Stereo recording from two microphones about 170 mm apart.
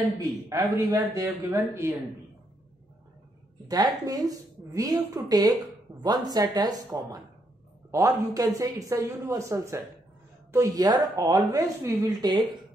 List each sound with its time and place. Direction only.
0.5 s a woman's voice: 20° right (ahead or behind)
3.6 s a woman's voice: 20° right (ahead or behind)